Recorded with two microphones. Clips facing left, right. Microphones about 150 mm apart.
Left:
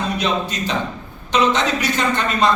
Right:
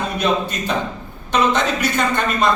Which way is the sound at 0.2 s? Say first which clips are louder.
Right 2 dB; 55° right (ahead or behind).